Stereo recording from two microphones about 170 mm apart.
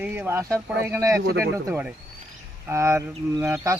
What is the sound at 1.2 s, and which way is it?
Speech, 75° right (ahead or behind).